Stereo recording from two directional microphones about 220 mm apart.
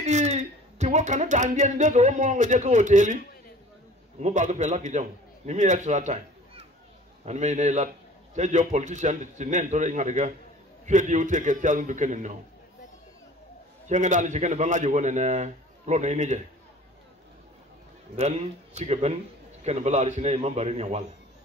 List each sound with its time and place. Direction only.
0.0 s speech: 30° right (ahead or behind)
4.2 s a man's voice: 35° right (ahead or behind)
13.8 s a man's voice: 35° right (ahead or behind)
18.1 s a man's voice: 30° right (ahead or behind)